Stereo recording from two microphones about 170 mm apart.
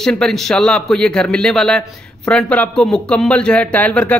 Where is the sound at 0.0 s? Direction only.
5° left (ahead or behind).